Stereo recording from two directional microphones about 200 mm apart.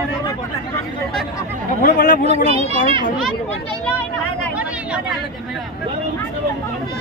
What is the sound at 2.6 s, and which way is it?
Speech, 30° right (ahead or behind).